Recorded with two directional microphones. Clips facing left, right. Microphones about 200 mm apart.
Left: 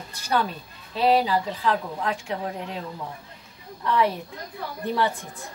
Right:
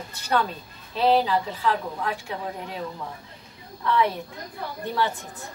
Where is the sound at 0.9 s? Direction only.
15° left (ahead or behind).